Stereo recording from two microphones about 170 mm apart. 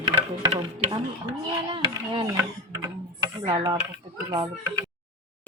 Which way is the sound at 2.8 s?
25° right (ahead or behind).